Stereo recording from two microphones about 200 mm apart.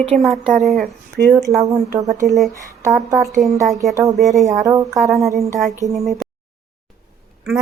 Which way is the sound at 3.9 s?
15° right (ahead or behind).